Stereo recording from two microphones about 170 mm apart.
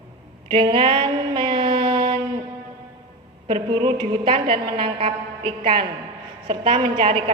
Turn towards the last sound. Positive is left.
turn(degrees=-30)  # may be behind; listen again after turning